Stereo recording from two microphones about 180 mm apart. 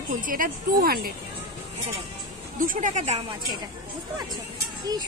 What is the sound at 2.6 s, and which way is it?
Speech, 45° right (ahead or behind).